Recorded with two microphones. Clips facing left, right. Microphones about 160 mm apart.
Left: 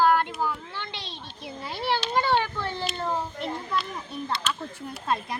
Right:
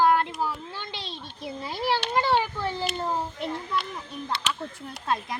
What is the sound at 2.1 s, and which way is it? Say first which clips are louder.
Children playing: left 1 dB; 5° right (ahead or behind).